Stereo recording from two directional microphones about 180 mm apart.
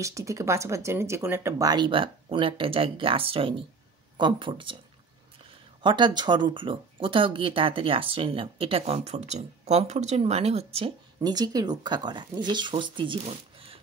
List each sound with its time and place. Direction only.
0.0 s speech: 15° right (ahead or behind)
5.8 s speech: 25° right (ahead or behind)
11.1 s speech: 20° right (ahead or behind)